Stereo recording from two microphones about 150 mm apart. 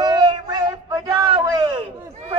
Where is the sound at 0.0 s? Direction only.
30° right (ahead or behind).